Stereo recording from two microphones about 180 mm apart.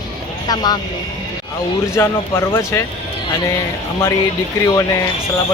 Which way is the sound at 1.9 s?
15° left (ahead or behind).